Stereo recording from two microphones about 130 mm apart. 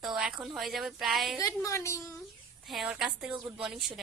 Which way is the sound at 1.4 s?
25° left (ahead or behind).